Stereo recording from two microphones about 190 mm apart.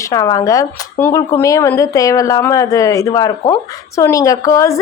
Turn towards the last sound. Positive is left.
turn(degrees=15)  # may be behind; listen again after turning